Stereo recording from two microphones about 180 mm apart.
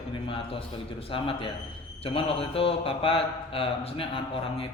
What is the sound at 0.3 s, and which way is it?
A man's voice, 30° left (ahead or behind).